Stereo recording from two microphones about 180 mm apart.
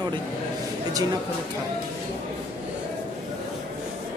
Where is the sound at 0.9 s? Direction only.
20° right (ahead or behind).